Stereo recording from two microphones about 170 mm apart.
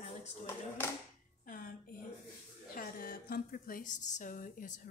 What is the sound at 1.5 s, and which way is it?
Speech, 55° left (ahead or behind).